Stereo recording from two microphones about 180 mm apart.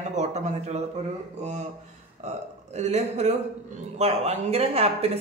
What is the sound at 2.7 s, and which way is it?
Speech, 40° right (ahead or behind).